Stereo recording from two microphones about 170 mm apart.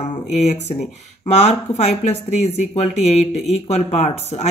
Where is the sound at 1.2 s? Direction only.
40° left (ahead or behind).